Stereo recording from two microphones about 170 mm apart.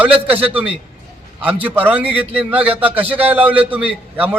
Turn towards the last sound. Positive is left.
turn(degrees=-10)  # may be behind; listen again after turning